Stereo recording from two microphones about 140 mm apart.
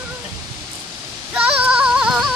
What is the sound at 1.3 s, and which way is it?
Music, 10° right (ahead or behind).